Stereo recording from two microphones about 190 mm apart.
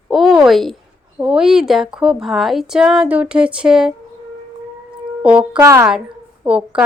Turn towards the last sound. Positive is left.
turn(degrees=-5)  # may be behind; listen again after turning